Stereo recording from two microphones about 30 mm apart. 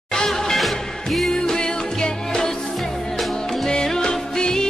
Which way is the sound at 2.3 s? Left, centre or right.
Centre.